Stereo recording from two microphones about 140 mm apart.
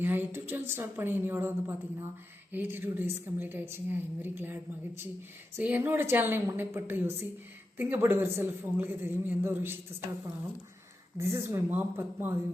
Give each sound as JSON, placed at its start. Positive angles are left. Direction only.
{"t": 0.0, "sound": "a woman's voice", "side_deg": -15}
{"t": 11.2, "sound": "a woman's voice", "side_deg": -20}